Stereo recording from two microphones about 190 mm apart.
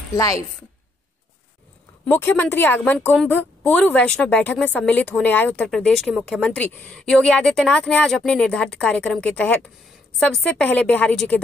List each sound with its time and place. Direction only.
0.1 s a woman's voice: 15° left (ahead or behind)
2.0 s a woman's voice: 10° left (ahead or behind)